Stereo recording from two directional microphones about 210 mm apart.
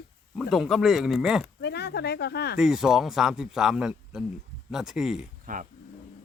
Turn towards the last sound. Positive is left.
turn(degrees=-40)  # may be behind; listen again after turning